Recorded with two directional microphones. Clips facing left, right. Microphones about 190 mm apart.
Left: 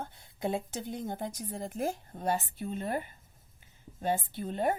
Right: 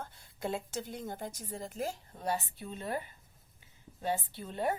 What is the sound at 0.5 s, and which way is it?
Speech, 20° left (ahead or behind).